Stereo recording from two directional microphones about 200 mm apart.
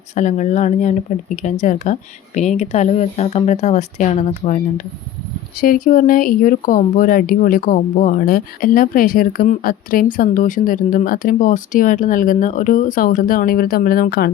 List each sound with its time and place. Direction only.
0.1 s speech: 35° left (ahead or behind)